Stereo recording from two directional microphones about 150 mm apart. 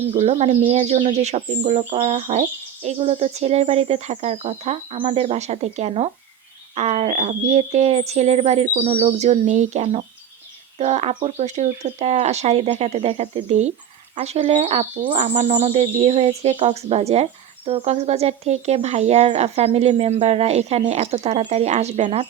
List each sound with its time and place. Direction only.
0.1 s speech: 40° right (ahead or behind)